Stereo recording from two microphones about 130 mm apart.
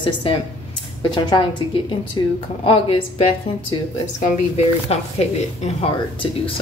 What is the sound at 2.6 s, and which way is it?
Speech, 45° left (ahead or behind).